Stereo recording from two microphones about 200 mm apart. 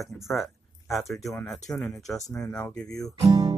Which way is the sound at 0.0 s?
Centre (ahead or behind).